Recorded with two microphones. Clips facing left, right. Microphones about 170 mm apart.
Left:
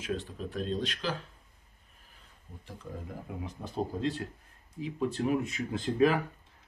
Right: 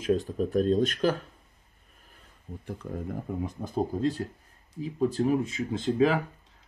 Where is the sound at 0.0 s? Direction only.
40° right (ahead or behind).